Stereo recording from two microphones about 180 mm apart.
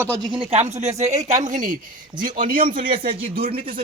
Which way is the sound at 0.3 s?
35° right (ahead or behind).